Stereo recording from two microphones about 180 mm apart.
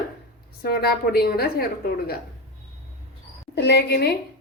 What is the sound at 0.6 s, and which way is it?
Speech, 60° left (ahead or behind).